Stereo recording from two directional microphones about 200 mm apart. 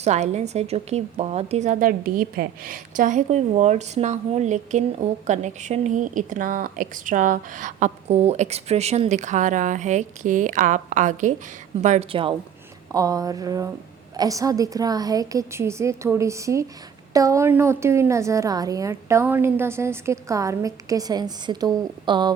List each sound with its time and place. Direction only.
0.0 s a woman's voice: 35° right (ahead or behind)